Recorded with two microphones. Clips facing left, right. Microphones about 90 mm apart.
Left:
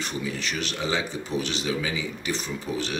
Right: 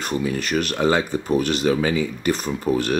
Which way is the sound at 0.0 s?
50° right (ahead or behind).